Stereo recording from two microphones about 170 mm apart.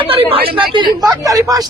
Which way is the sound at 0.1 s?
30° right (ahead or behind).